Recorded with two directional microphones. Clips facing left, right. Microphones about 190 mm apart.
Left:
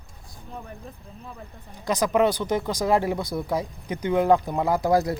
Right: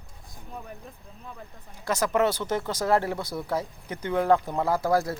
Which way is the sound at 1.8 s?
15° left (ahead or behind).